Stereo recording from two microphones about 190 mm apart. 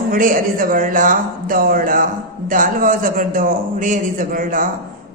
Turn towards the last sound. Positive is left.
turn(degrees=-45)  # may be behind; listen again after turning